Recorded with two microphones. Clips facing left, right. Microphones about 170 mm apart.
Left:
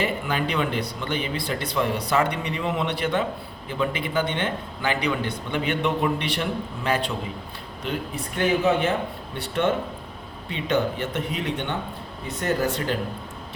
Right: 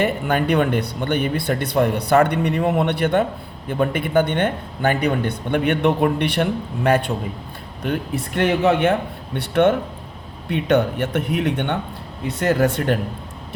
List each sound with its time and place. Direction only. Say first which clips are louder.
0.0 s a man's voice: right 6 dB; 55° right (ahead or behind)
8.4 s a man's voice: right 4 dB; 65° right (ahead or behind)